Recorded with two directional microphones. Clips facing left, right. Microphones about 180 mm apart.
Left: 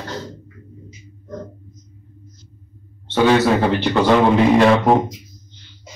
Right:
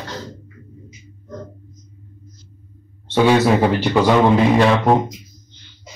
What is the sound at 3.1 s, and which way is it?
Speech, 10° right (ahead or behind).